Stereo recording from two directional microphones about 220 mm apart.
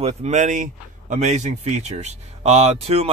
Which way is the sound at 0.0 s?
30° right (ahead or behind).